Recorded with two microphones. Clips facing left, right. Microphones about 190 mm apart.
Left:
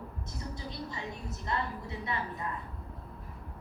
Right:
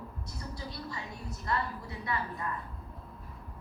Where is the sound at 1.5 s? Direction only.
20° left (ahead or behind).